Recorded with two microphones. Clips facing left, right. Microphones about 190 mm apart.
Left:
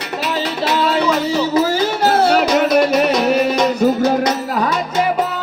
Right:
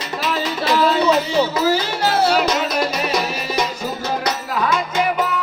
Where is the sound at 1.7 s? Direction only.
50° left (ahead or behind).